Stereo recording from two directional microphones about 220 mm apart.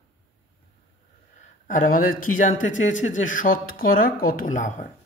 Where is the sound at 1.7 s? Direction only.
35° left (ahead or behind).